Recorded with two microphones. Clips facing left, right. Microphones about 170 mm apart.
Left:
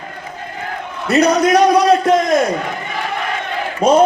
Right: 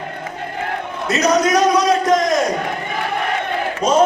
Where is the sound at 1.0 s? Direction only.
60° left (ahead or behind).